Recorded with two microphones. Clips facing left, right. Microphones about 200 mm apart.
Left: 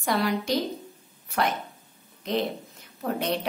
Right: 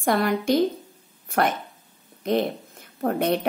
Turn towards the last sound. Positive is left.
turn(degrees=-55)  # may be behind; listen again after turning